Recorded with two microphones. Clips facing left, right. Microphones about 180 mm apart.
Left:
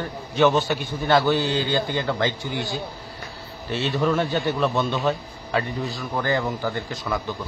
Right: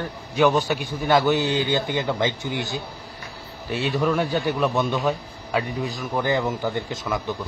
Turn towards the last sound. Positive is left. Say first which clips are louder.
# right 1 dB
turn(degrees=-20)  # may be behind; listen again after turning